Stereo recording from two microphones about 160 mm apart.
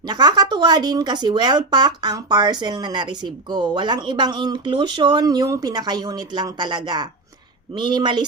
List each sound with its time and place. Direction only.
0.0 s speech: 25° right (ahead or behind)